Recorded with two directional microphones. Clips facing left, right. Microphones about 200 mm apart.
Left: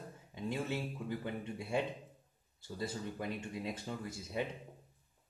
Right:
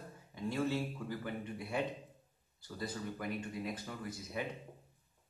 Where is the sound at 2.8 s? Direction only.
25° left (ahead or behind).